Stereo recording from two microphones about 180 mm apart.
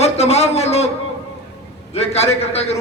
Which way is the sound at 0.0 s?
35° left (ahead or behind).